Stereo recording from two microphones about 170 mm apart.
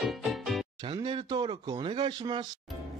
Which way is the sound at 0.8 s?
30° right (ahead or behind).